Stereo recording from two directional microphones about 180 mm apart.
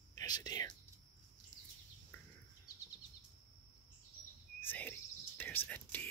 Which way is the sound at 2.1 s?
10° left (ahead or behind).